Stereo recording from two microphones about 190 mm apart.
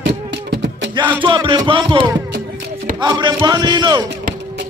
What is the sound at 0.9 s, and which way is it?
Music, 25° right (ahead or behind).